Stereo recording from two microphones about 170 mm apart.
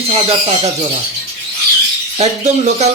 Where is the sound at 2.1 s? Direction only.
40° right (ahead or behind).